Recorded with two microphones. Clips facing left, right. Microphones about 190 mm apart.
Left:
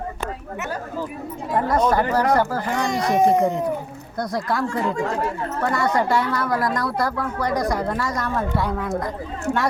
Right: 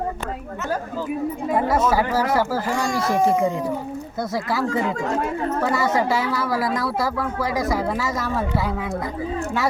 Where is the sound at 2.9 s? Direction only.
20° left (ahead or behind).